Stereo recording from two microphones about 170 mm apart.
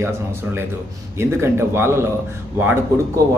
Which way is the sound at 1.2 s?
15° right (ahead or behind).